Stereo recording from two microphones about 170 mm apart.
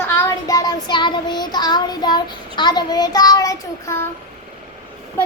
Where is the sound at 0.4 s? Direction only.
20° left (ahead or behind).